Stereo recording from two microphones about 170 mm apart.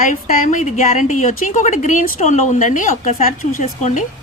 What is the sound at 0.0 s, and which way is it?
A woman's voice, 45° left (ahead or behind).